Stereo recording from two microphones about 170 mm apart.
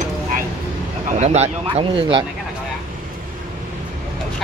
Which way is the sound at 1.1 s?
40° right (ahead or behind).